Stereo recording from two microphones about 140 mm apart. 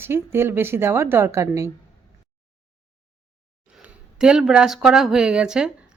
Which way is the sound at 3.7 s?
5° right (ahead or behind).